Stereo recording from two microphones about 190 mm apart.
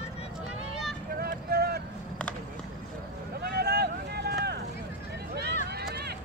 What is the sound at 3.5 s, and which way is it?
Vehicle, 55° right (ahead or behind).